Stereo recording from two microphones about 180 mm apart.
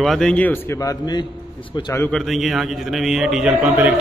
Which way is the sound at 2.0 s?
Centre (ahead or behind).